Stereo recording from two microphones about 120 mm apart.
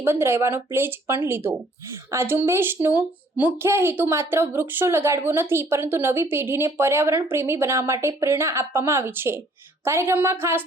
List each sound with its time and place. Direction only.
0.0 s speech: 20° right (ahead or behind)